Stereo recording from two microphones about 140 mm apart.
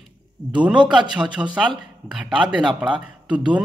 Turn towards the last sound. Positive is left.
turn(degrees=-10)  # may be behind; listen again after turning